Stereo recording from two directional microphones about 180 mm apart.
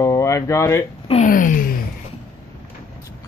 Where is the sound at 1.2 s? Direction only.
50° left (ahead or behind).